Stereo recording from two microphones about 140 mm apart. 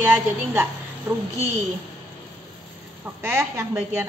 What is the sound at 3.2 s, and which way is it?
Speech, 20° right (ahead or behind).